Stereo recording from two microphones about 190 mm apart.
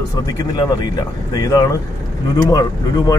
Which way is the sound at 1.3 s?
15° left (ahead or behind).